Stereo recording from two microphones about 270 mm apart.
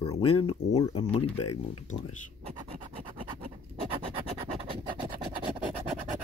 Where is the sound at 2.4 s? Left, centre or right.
Right.